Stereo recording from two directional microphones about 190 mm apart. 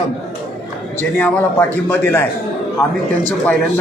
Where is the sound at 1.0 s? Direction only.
10° left (ahead or behind).